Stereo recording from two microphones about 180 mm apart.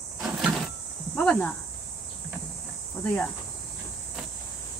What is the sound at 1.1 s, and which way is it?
Cricket, 5° left (ahead or behind).